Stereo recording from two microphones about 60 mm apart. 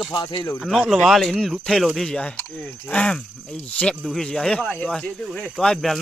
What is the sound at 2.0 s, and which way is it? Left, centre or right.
Speech, centre.